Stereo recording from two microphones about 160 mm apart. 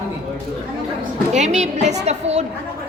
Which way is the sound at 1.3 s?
45° right (ahead or behind).